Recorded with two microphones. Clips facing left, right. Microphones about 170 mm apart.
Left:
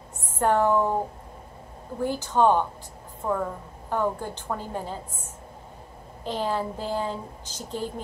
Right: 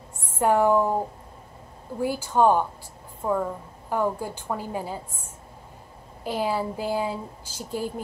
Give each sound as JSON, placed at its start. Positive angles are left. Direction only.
{"t": 0.4, "sound": "speech", "side_deg": -10}
{"t": 2.0, "sound": "a woman's voice", "side_deg": -10}
{"t": 6.2, "sound": "speech", "side_deg": -10}